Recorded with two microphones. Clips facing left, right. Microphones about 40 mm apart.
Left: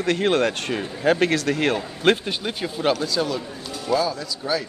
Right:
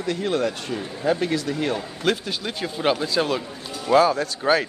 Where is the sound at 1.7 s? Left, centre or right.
Left.